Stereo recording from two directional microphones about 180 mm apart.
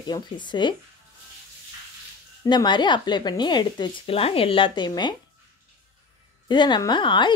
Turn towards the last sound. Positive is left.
turn(degrees=25)  # may be behind; listen again after turning